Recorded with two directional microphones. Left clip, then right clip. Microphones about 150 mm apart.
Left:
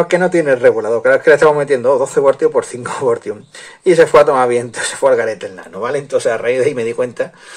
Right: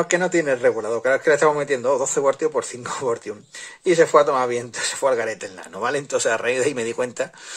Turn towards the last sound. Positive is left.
turn(degrees=-30)  # may be behind; listen again after turning